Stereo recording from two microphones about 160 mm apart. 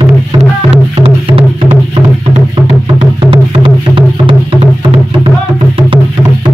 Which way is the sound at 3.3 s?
30° right (ahead or behind).